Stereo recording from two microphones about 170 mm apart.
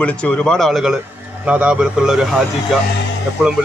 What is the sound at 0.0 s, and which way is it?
Speech, 5° left (ahead or behind).